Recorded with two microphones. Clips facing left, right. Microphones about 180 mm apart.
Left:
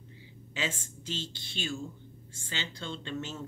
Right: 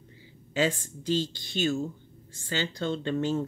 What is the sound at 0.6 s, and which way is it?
Speech, 40° right (ahead or behind).